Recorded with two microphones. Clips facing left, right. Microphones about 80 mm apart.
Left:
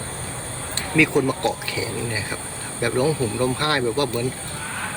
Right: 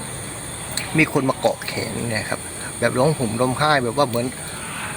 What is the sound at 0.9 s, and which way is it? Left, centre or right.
Speech, centre.